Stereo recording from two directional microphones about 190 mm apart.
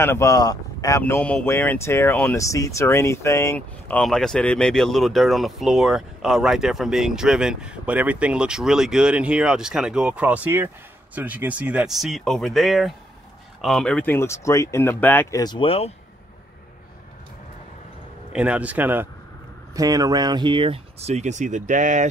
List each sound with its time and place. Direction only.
0.0 s speech: 15° left (ahead or behind)
15.4 s speech: 25° left (ahead or behind)
18.3 s a man's voice: 5° right (ahead or behind); by 22.1 s 40° right (ahead or behind)